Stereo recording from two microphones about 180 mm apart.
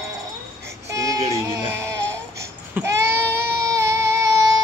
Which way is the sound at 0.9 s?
15° right (ahead or behind).